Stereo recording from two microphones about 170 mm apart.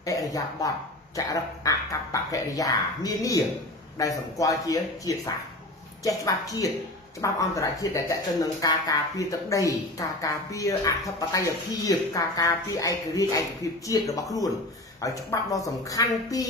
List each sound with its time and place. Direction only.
0.0 s speech: 20° left (ahead or behind)